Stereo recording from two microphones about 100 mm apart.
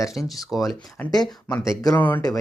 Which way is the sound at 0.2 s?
Centre (ahead or behind).